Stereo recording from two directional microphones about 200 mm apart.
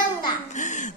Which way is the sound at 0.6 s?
40° left (ahead or behind).